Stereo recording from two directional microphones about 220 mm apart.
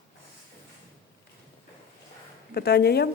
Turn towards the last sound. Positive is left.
turn(degrees=45)  # may be behind; listen again after turning